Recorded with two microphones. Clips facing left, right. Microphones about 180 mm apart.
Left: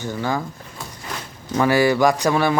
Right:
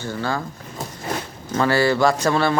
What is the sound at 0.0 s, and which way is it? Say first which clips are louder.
Speech: left 1 dB; 15° left (ahead or behind).